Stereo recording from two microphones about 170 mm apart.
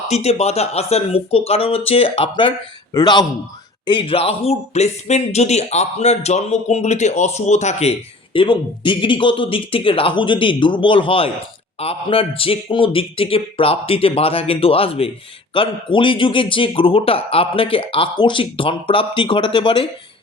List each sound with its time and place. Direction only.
0.1 s a man's voice: 40° left (ahead or behind)